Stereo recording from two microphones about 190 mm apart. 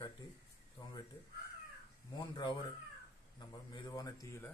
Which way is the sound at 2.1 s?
20° left (ahead or behind).